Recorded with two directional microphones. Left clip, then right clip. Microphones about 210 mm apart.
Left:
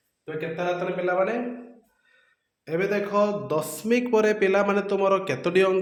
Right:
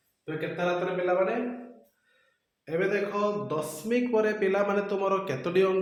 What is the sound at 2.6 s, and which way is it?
A man's voice, 55° left (ahead or behind).